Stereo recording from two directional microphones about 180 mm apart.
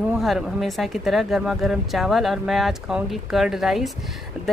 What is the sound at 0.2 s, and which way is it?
Speech, centre (ahead or behind).